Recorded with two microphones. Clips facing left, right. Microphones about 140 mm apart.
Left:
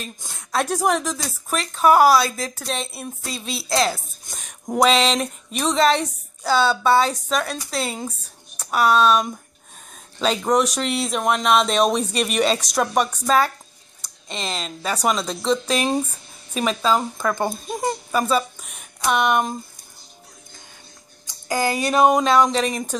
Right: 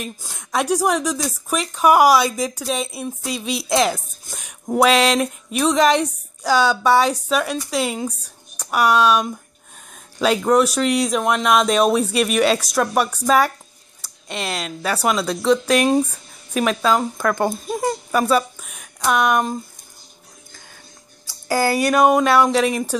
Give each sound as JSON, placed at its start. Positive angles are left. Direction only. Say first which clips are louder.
{"t": 0.0, "sound": "speech", "louder": "right 4 dB", "side_deg": -15}
{"t": 3.3, "sound": "speech", "louder": "right 4 dB", "side_deg": -15}
{"t": 16.9, "sound": "speech", "louder": "right 2 dB", "side_deg": 10}
{"t": 17.4, "sound": "speech", "louder": "right 3 dB", "side_deg": -5}
{"t": 21.3, "sound": "speech", "louder": "right 3 dB", "side_deg": 20}
{"t": 22.4, "sound": "speech", "louder": "right 2 dB", "side_deg": -10}